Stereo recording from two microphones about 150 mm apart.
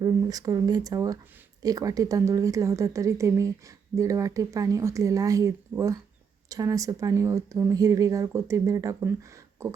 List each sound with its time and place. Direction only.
0.0 s speech: 25° right (ahead or behind)